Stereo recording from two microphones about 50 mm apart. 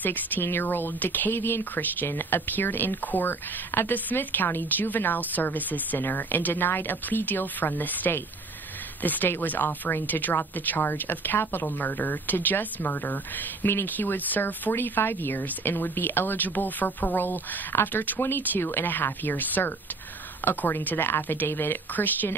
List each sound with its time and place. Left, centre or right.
0.0 s speech: left
14.7 s speech: left